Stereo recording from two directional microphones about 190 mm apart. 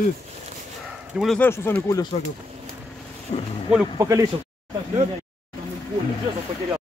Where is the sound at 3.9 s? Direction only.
15° right (ahead or behind).